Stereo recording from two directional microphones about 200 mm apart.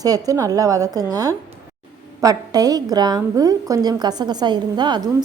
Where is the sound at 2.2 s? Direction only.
20° right (ahead or behind).